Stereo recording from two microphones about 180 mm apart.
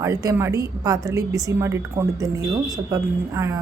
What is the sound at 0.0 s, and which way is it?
A woman's voice, 15° right (ahead or behind).